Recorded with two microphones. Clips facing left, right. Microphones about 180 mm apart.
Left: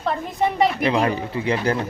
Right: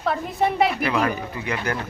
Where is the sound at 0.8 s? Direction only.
25° left (ahead or behind).